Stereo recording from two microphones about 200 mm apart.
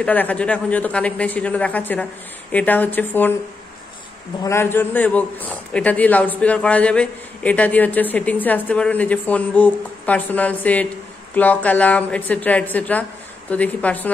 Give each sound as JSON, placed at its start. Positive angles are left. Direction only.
{"t": 0.0, "sound": "a man's voice", "side_deg": 5}
{"t": 4.4, "sound": "a man's voice", "side_deg": 15}